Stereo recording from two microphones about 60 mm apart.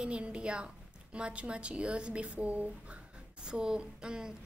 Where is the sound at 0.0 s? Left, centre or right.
Centre.